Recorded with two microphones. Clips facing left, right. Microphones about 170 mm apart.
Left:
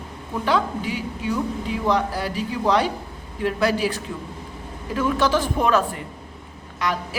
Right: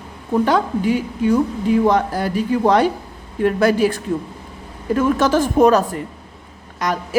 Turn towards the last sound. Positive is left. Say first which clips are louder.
# right 3 dB
turn(degrees=-45)  # may be behind; listen again after turning